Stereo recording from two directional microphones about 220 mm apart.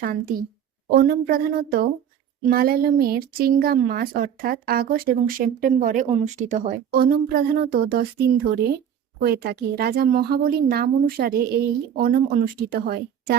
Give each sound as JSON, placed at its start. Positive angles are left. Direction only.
{"t": 0.0, "sound": "a woman's voice", "side_deg": -40}